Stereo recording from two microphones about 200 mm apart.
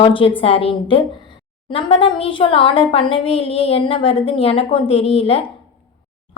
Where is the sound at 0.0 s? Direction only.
25° left (ahead or behind).